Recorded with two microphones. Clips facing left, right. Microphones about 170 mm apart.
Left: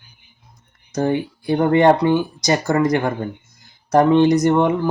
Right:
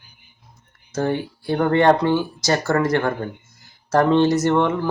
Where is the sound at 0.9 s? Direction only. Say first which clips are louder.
Left 3 dB; 15° left (ahead or behind).